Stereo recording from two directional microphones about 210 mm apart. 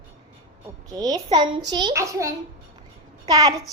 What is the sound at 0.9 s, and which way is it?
A child's voice, 20° right (ahead or behind).